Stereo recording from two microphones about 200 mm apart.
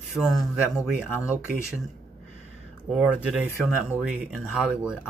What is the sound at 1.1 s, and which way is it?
Speech, 10° left (ahead or behind).